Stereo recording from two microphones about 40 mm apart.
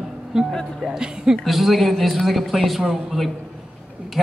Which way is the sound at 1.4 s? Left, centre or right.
Centre.